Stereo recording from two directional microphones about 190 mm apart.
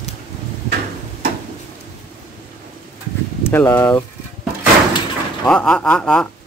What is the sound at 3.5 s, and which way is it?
Speech, 10° left (ahead or behind).